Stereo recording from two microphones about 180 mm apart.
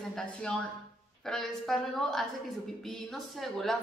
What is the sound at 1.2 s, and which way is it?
A woman's voice, centre (ahead or behind).